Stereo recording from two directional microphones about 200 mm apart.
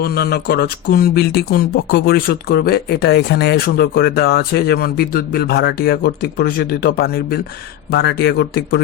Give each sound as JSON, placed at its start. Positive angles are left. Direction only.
{"t": 0.0, "sound": "speech", "side_deg": 50}